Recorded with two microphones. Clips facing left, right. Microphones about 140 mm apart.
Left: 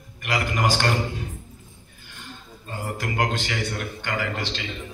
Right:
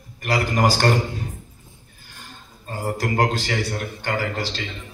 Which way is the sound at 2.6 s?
40° right (ahead or behind).